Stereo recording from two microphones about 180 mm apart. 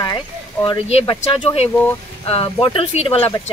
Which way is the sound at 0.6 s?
35° left (ahead or behind).